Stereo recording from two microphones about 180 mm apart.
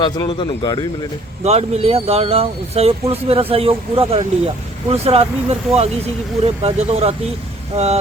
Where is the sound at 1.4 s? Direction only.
35° right (ahead or behind).